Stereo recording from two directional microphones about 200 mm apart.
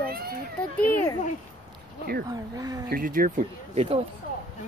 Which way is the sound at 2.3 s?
20° right (ahead or behind).